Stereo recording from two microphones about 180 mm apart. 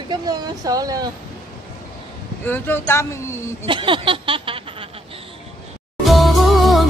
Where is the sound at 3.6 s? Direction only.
30° right (ahead or behind).